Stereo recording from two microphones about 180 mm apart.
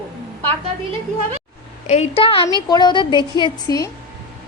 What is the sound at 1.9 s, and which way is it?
A woman's voice, 35° left (ahead or behind).